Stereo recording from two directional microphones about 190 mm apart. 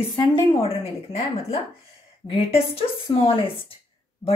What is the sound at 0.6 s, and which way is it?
A woman's voice, 30° left (ahead or behind).